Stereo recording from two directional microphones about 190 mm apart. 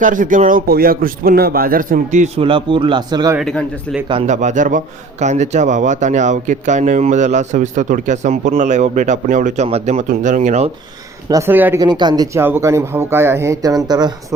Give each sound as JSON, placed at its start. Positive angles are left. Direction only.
{"t": 0.0, "sound": "a man's voice", "side_deg": -45}
{"t": 3.3, "sound": "speech", "side_deg": 0}
{"t": 4.1, "sound": "speech", "side_deg": -40}
{"t": 11.3, "sound": "speech", "side_deg": -15}
{"t": 11.8, "sound": "speech", "side_deg": -20}